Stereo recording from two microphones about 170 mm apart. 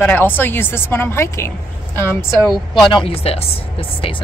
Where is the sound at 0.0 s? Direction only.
10° left (ahead or behind).